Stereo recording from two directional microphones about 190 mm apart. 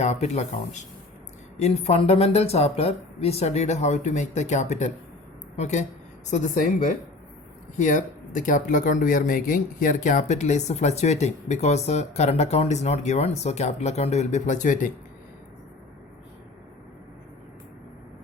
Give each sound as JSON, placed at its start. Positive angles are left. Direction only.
{"t": 0.0, "sound": "a woman's voice", "side_deg": 35}